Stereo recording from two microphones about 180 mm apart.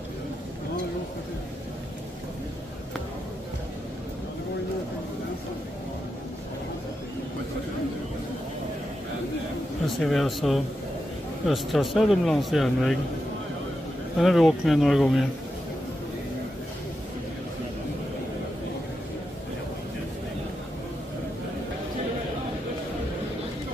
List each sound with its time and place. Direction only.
9.8 s a man's voice: centre (ahead or behind)
14.1 s a man's voice: centre (ahead or behind)